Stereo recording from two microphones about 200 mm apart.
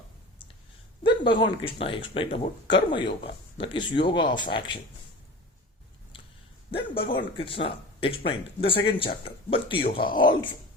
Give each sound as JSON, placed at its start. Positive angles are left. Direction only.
{"t": 1.0, "sound": "speech", "side_deg": 25}
{"t": 6.7, "sound": "a man's voice", "side_deg": 25}